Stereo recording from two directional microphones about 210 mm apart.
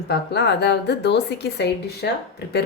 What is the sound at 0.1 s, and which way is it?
A woman's voice, 50° left (ahead or behind).